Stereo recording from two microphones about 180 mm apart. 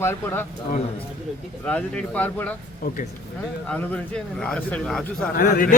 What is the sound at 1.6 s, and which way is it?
Speech, 5° left (ahead or behind).